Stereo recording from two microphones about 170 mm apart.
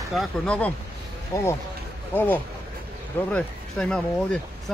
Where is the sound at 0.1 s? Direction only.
Centre (ahead or behind).